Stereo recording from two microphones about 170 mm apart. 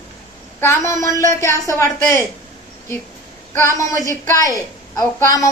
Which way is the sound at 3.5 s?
15° left (ahead or behind).